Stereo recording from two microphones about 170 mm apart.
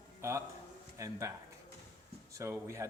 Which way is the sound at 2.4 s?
15° right (ahead or behind).